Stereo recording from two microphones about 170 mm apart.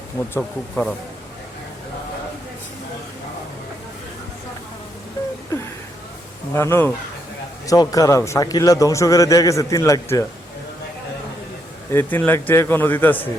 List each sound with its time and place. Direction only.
0.2 s a man's voice: 15° left (ahead or behind)
6.5 s a man's voice: 15° left (ahead or behind)
11.9 s a man's voice: 10° left (ahead or behind)